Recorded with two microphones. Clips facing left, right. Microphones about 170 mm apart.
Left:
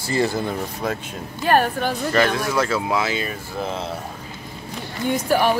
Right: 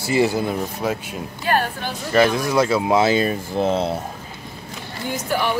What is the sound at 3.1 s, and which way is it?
Speech, 35° right (ahead or behind).